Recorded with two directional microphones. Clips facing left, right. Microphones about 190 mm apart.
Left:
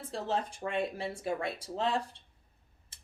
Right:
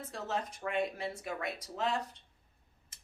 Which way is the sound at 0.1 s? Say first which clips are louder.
Left 5 dB; 30° left (ahead or behind).